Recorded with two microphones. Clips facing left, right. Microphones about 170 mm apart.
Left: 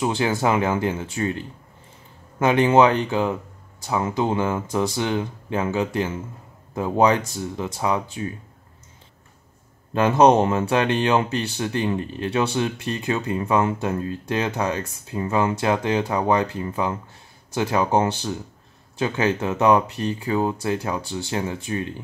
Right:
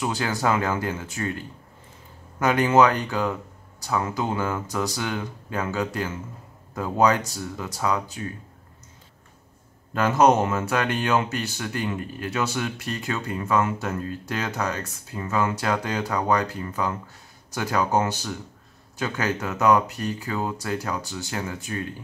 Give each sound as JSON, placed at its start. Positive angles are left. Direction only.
{"t": 0.0, "sound": "speech", "side_deg": 25}
{"t": 9.9, "sound": "speech", "side_deg": 25}